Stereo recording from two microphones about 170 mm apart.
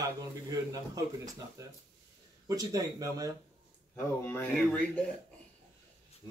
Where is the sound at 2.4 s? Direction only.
20° right (ahead or behind).